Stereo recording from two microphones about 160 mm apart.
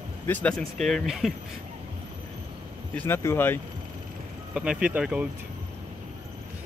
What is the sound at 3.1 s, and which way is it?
Speech, 15° left (ahead or behind).